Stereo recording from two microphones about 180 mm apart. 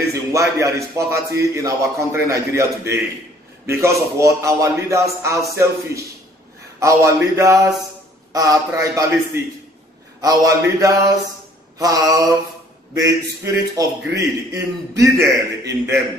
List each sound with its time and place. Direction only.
0.1 s a man's voice: 15° right (ahead or behind)